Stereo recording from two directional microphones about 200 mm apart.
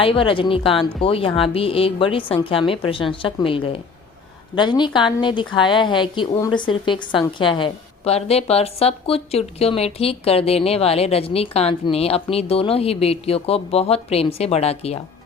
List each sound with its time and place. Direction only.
0.0 s a woman's voice: 25° left (ahead or behind)